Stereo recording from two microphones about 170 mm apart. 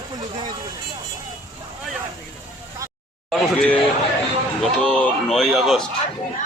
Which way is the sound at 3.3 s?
Centre (ahead or behind).